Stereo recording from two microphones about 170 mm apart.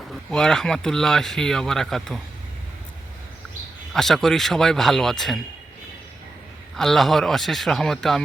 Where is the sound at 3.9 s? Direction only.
Centre (ahead or behind).